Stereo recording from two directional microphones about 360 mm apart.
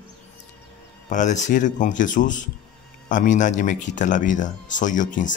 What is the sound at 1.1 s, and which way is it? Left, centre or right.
Speech, centre.